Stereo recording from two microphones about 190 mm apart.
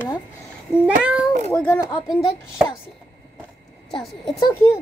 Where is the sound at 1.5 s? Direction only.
10° left (ahead or behind).